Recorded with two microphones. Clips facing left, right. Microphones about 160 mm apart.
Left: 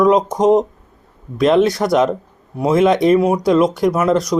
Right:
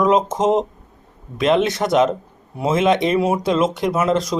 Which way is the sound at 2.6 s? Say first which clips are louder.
Left 4 dB; 20° right (ahead or behind).